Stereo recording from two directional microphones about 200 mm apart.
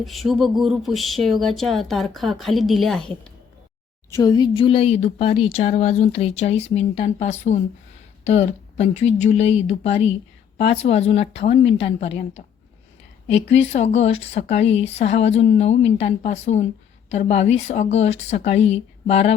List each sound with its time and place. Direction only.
0.0 s a woman's voice: centre (ahead or behind)
4.1 s speech: 20° left (ahead or behind)